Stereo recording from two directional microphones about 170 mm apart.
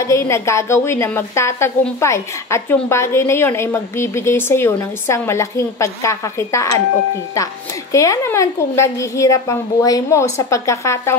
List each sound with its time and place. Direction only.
0.0 s a woman's voice: 15° left (ahead or behind)
7.9 s a woman's voice: 20° left (ahead or behind)